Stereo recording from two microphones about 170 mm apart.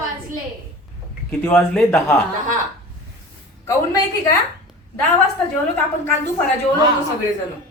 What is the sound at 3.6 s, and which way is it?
Speech, 20° left (ahead or behind).